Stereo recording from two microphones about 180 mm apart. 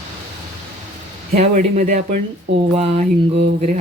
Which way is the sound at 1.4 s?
45° right (ahead or behind).